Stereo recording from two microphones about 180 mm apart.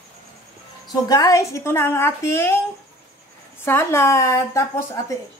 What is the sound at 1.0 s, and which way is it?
Speech, 20° left (ahead or behind).